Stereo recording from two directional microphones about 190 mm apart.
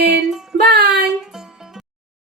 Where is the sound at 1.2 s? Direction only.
Centre (ahead or behind).